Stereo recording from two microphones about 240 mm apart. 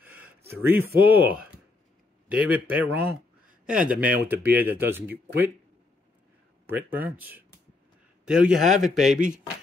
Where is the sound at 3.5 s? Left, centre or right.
Right.